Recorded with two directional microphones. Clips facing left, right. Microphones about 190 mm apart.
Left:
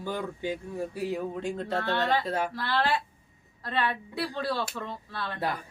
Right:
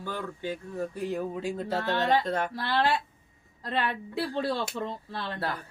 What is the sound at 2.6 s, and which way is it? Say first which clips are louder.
A woman's voice: right 1 dB; 20° right (ahead or behind).